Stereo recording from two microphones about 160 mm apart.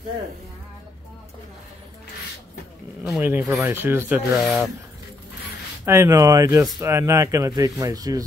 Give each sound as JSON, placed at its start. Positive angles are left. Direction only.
{"t": 3.0, "sound": "a sound", "side_deg": -10}
{"t": 3.6, "sound": "speech", "side_deg": -15}
{"t": 4.4, "sound": "speech", "side_deg": 0}
{"t": 5.9, "sound": "speech", "side_deg": -20}